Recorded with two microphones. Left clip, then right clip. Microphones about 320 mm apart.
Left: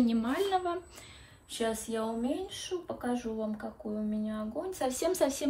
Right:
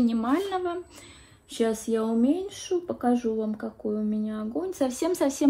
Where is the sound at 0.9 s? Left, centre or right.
Right.